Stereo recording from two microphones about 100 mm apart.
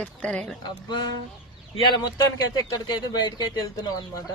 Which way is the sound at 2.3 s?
40° left (ahead or behind).